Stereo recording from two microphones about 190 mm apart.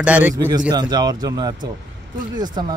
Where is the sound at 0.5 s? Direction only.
20° right (ahead or behind).